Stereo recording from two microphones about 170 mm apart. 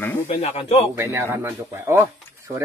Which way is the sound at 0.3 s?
40° left (ahead or behind).